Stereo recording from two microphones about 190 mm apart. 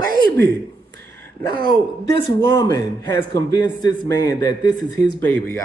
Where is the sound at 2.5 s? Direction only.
20° left (ahead or behind).